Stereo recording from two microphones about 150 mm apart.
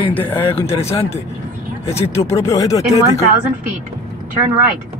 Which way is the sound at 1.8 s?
45° left (ahead or behind).